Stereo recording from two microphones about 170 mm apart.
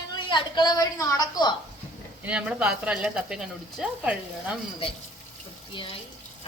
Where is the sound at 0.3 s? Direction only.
25° left (ahead or behind).